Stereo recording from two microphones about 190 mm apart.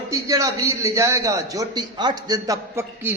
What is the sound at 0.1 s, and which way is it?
A man's voice, 15° right (ahead or behind).